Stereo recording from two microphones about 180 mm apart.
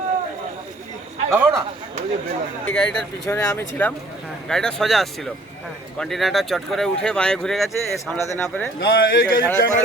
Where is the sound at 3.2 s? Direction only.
15° left (ahead or behind).